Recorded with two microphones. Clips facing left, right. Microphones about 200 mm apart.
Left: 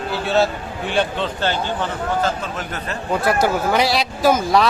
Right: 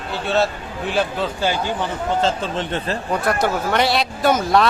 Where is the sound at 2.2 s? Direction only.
30° right (ahead or behind).